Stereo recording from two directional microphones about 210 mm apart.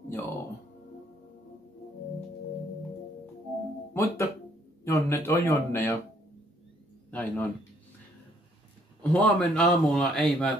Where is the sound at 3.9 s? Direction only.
15° left (ahead or behind).